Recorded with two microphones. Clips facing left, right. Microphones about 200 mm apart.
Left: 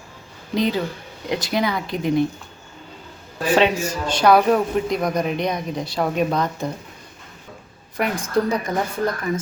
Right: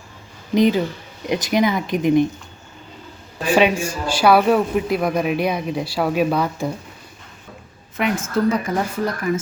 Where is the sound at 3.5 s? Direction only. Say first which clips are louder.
Right 1 dB; 10° right (ahead or behind).